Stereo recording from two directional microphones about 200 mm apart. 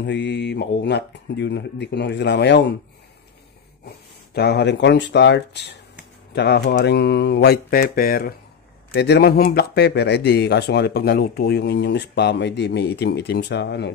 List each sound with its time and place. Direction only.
0.0 s speech: 60° left (ahead or behind)
4.3 s speech: 55° left (ahead or behind)